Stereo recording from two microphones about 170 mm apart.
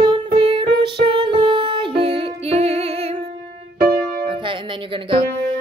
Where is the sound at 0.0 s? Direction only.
30° right (ahead or behind).